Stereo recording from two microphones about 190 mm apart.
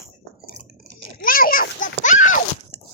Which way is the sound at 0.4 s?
60° right (ahead or behind).